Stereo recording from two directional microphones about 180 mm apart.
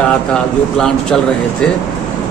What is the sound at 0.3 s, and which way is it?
Speech, 5° left (ahead or behind).